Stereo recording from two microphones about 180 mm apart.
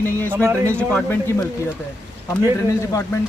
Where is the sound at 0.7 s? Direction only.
5° left (ahead or behind).